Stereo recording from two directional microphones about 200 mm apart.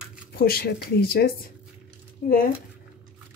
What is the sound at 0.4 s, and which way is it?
Speech, 50° left (ahead or behind).